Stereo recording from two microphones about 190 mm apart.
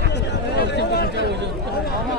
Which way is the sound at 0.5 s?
55° left (ahead or behind).